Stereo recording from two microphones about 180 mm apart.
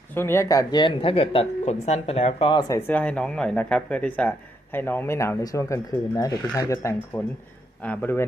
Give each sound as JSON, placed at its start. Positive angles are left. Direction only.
{"t": 0.1, "sound": "speech", "side_deg": 15}